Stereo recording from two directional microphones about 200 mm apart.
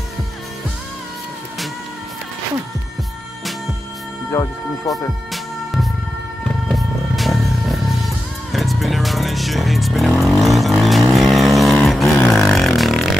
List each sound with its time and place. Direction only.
4.3 s speech: 15° left (ahead or behind)
6.7 s music: centre (ahead or behind)
11.1 s vehicle: centre (ahead or behind)